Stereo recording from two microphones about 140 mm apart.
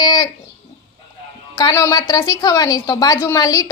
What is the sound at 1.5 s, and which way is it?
A woman's voice, 25° left (ahead or behind).